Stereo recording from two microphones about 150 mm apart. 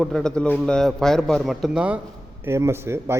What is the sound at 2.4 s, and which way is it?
Speech, 15° right (ahead or behind).